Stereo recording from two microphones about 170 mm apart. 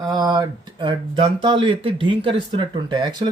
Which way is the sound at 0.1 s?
25° right (ahead or behind).